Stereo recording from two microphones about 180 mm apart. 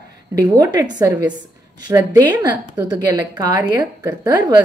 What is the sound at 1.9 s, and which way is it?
A woman's voice, 20° right (ahead or behind).